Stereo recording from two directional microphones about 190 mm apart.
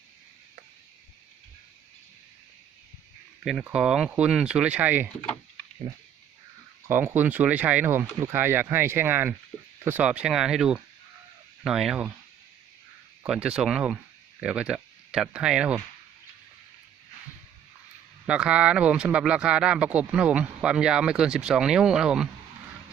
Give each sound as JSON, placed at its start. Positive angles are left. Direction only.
{"t": 3.4, "sound": "speech", "side_deg": -5}
{"t": 6.8, "sound": "speech", "side_deg": -10}
{"t": 13.2, "sound": "speech", "side_deg": -5}
{"t": 18.3, "sound": "speech", "side_deg": -5}